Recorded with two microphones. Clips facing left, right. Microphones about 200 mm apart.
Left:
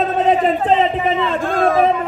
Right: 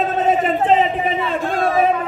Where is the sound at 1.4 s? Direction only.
50° left (ahead or behind).